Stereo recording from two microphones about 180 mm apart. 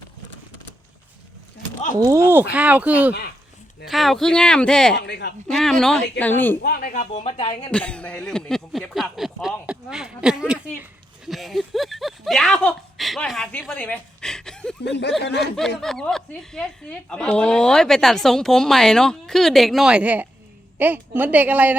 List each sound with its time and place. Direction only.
2.0 s a woman's voice: 15° right (ahead or behind); by 4.9 s 5° left (ahead or behind)
4.9 s speech: 70° left (ahead or behind)
5.5 s a woman's voice: centre (ahead or behind)
6.6 s speech: 55° left (ahead or behind); by 7.7 s 35° left (ahead or behind)
7.7 s a woman's voice: 5° left (ahead or behind)
14.8 s speech: 70° left (ahead or behind)
15.4 s a woman's voice: centre (ahead or behind)